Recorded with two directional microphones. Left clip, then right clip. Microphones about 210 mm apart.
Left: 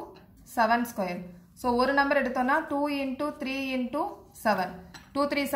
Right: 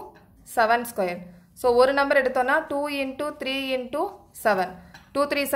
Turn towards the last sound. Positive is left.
turn(degrees=-55)  # may be behind; listen again after turning